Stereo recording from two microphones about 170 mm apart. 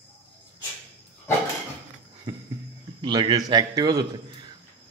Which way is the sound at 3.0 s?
25° right (ahead or behind).